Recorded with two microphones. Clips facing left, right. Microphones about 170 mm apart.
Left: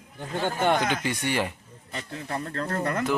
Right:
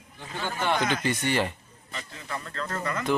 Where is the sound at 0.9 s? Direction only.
10° left (ahead or behind).